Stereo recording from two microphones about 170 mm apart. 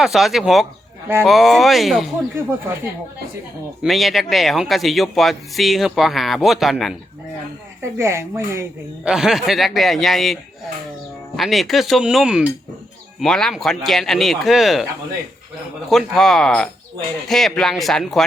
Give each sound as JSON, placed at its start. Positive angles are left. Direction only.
{"t": 0.0, "sound": "speech", "side_deg": 0}
{"t": 3.8, "sound": "speech", "side_deg": 0}
{"t": 7.8, "sound": "speech", "side_deg": -15}
{"t": 9.0, "sound": "speech", "side_deg": -5}
{"t": 11.3, "sound": "speech", "side_deg": 0}
{"t": 15.9, "sound": "speech", "side_deg": 0}